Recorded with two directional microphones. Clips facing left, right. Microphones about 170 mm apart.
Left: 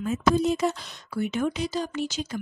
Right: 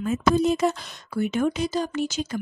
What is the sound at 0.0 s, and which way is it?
A woman's voice, 65° right (ahead or behind).